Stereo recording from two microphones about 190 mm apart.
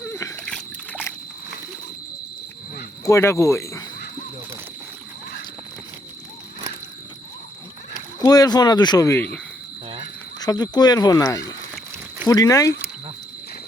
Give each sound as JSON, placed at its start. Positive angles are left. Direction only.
{"t": 0.0, "sound": "slosh", "side_deg": 15}
{"t": 0.4, "sound": "a sound", "side_deg": 5}
{"t": 3.0, "sound": "speech", "side_deg": 15}
{"t": 8.2, "sound": "speech", "side_deg": 20}
{"t": 10.4, "sound": "speech", "side_deg": 20}